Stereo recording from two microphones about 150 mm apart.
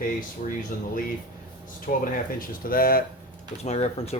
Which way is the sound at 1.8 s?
70° left (ahead or behind).